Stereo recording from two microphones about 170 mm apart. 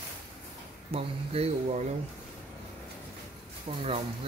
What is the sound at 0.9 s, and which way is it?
Speech, 35° right (ahead or behind).